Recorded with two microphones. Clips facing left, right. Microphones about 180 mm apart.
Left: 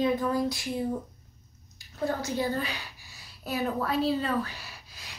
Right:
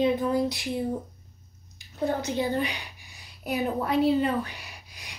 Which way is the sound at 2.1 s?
20° right (ahead or behind).